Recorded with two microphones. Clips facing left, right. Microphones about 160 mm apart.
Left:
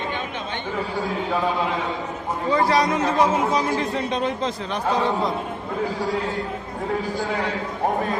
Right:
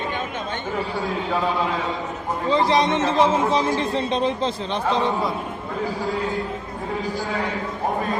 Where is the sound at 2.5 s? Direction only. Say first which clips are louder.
Right 1 dB; 25° right (ahead or behind).